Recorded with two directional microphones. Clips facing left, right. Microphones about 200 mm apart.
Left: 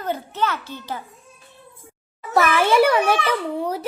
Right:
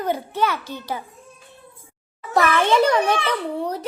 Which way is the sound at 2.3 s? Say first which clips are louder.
Left 1 dB; 10° left (ahead or behind).